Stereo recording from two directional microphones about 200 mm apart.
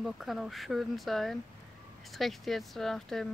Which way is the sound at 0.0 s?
Centre (ahead or behind).